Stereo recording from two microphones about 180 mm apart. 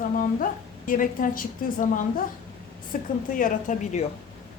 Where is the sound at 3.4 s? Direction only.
40° left (ahead or behind).